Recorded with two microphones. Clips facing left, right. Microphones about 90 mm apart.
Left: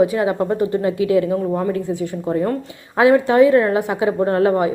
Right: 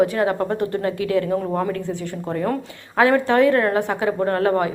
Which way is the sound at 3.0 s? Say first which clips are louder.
Left 4 dB; 10° left (ahead or behind).